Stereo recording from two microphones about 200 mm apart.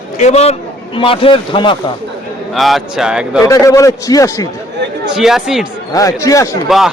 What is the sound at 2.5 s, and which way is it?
Speech, centre (ahead or behind).